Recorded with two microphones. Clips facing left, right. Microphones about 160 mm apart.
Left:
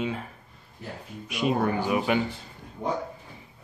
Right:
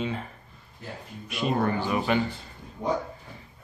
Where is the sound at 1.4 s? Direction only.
10° left (ahead or behind).